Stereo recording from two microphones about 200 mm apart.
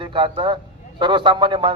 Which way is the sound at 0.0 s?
25° right (ahead or behind).